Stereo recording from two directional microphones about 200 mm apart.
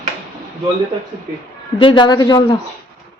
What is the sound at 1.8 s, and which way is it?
Speech, 25° left (ahead or behind).